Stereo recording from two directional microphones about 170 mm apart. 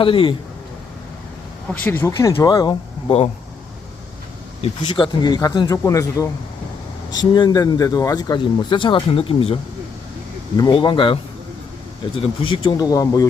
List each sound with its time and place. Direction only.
0.0 s speech: 30° left (ahead or behind)
1.8 s speech: 15° left (ahead or behind)
2.1 s speech: 25° left (ahead or behind)
4.6 s speech: 30° left (ahead or behind)
10.6 s speech: 30° left (ahead or behind)
12.2 s speech: 30° left (ahead or behind)